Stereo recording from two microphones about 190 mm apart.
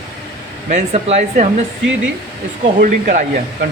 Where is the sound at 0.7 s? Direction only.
35° right (ahead or behind).